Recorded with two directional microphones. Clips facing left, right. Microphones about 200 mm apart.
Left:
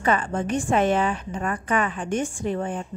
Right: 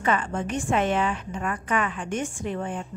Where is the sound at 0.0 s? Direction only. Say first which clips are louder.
Left 2 dB; 40° left (ahead or behind).